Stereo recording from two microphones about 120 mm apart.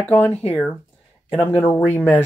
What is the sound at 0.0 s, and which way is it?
Speech, 15° left (ahead or behind).